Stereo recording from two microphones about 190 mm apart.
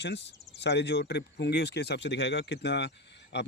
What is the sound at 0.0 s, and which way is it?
Speech, 65° left (ahead or behind).